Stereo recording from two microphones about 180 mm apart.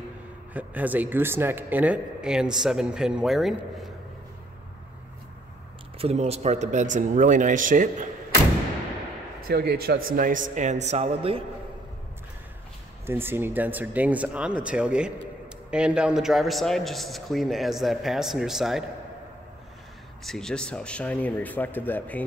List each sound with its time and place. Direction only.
0.5 s speech: 10° right (ahead or behind)
5.9 s a man's voice: 35° right (ahead or behind)
9.4 s a man's voice: 55° right (ahead or behind); by 11.4 s 30° right (ahead or behind)
13.0 s speech: 10° right (ahead or behind)
20.2 s speech: 5° left (ahead or behind)